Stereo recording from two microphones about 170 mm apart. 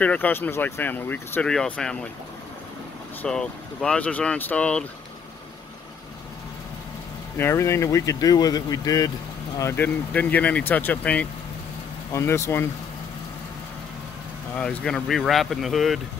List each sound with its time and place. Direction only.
0.0 s speech: 10° left (ahead or behind)
3.2 s speech: 5° left (ahead or behind)
7.3 s speech: 15° left (ahead or behind)
14.5 s speech: 5° left (ahead or behind)